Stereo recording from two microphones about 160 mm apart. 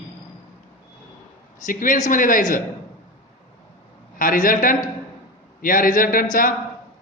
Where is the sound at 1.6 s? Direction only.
55° left (ahead or behind).